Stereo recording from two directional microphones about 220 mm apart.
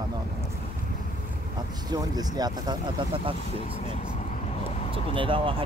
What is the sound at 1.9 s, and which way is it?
Speech, 15° right (ahead or behind).